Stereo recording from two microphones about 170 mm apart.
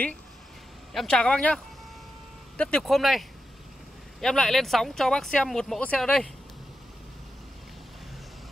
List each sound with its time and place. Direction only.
0.9 s speech: 5° left (ahead or behind)